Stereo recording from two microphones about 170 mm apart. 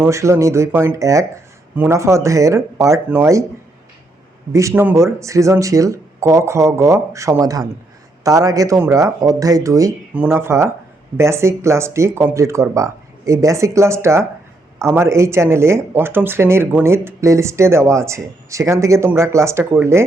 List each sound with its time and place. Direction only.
0.0 s speech: 15° right (ahead or behind)
4.5 s speech: 15° right (ahead or behind)